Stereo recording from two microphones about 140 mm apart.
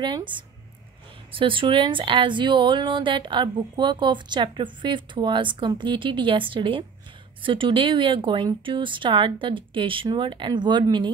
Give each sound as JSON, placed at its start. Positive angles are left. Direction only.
{"t": 1.3, "sound": "speech", "side_deg": -35}